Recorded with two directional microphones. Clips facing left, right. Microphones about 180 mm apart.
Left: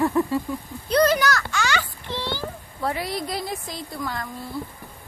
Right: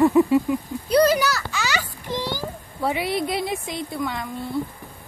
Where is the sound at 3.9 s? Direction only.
Centre (ahead or behind).